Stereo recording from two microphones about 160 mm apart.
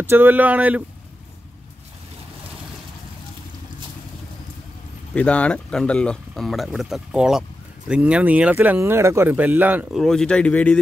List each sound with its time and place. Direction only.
0.1 s speech: 10° right (ahead or behind)
5.1 s speech: 10° left (ahead or behind); by 9.8 s 10° right (ahead or behind)
9.9 s speech: 5° left (ahead or behind)